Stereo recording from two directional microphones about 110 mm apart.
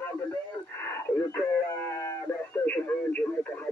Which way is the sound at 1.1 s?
20° left (ahead or behind).